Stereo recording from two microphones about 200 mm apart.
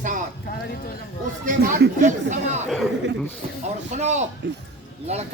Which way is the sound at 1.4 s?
55° right (ahead or behind).